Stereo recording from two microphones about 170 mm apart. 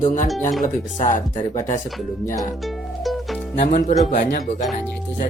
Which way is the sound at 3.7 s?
50° left (ahead or behind).